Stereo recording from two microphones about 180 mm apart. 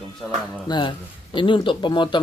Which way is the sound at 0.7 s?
25° left (ahead or behind).